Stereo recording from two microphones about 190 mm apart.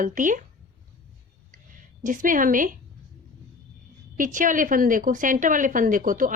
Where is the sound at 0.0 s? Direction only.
45° right (ahead or behind).